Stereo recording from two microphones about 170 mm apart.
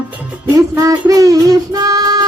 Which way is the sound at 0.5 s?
20° right (ahead or behind).